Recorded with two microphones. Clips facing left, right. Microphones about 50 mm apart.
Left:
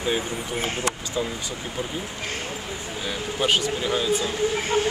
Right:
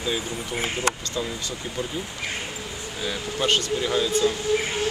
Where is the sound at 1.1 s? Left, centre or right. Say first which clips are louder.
Left 1 dB; centre.